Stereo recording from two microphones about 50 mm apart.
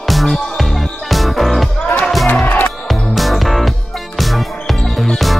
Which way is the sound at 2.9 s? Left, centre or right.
Centre.